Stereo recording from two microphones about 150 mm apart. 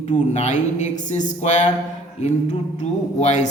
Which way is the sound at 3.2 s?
50° left (ahead or behind).